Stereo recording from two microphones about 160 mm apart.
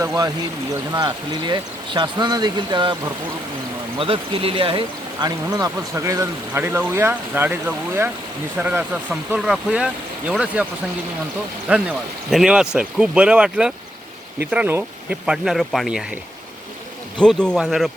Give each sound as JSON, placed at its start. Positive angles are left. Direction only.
{"t": 0.0, "sound": "speech", "side_deg": -20}
{"t": 11.7, "sound": "speech", "side_deg": -5}
{"t": 17.2, "sound": "speech", "side_deg": 5}